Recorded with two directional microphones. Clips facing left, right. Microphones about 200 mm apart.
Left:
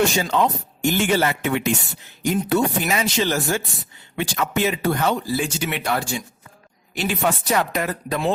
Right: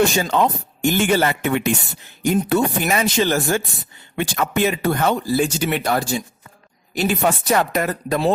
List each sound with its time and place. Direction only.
0.2 s speech: 50° right (ahead or behind)